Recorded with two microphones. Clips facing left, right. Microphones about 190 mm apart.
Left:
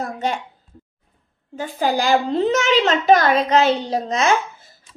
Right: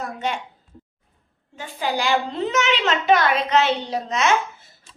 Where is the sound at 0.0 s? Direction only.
40° left (ahead or behind).